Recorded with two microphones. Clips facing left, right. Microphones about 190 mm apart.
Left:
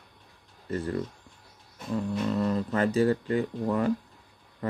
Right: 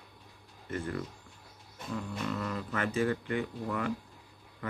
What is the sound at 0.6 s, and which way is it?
Speech, 35° left (ahead or behind).